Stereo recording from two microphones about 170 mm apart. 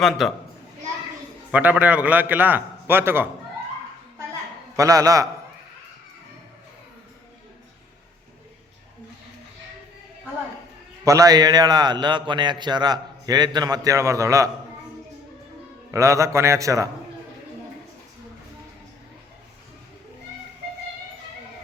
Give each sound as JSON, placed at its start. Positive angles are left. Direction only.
{"t": 0.0, "sound": "a child's voice", "side_deg": 0}
{"t": 1.5, "sound": "a man's voice", "side_deg": -5}
{"t": 4.8, "sound": "a man's voice", "side_deg": -20}
{"t": 11.0, "sound": "a man's voice", "side_deg": -20}
{"t": 15.9, "sound": "a man's voice", "side_deg": -20}